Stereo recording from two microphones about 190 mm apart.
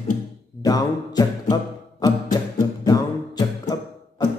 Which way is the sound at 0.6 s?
20° left (ahead or behind).